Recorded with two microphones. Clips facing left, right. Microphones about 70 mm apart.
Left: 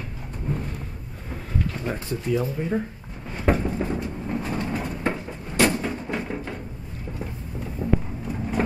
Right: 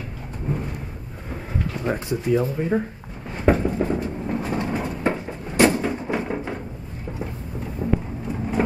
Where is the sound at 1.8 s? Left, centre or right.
Right.